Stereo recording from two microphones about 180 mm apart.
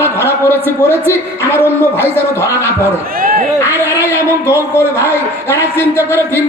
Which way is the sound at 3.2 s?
50° right (ahead or behind).